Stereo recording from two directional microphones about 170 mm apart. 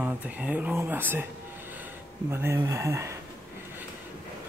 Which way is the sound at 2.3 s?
15° right (ahead or behind).